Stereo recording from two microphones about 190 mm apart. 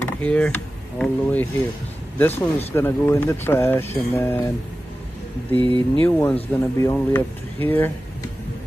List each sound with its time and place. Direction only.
0.0 s speech: 5° left (ahead or behind)
5.6 s speech: 25° right (ahead or behind)
6.0 s speech: 10° left (ahead or behind)